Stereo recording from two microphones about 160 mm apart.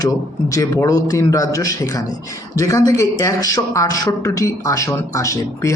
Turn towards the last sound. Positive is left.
turn(degrees=20)  # may be behind; listen again after turning